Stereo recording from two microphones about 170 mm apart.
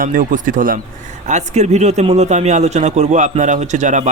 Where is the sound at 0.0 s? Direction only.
55° right (ahead or behind).